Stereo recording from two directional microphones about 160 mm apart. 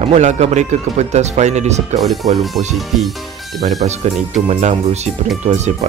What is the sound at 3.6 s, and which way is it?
Speech, 45° right (ahead or behind).